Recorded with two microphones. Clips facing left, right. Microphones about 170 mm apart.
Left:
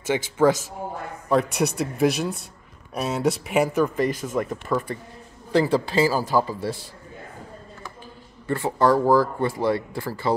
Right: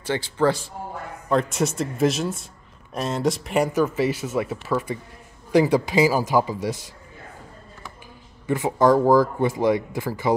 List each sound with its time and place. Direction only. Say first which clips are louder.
0.1 s speech: left 2 dB; 15° left (ahead or behind)
1.6 s speech: even; centre (ahead or behind); by 6.9 s 15° right (ahead or behind)
8.5 s speech: right 2 dB; 15° right (ahead or behind)